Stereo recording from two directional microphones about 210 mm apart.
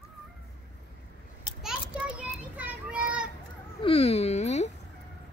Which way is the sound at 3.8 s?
25° left (ahead or behind).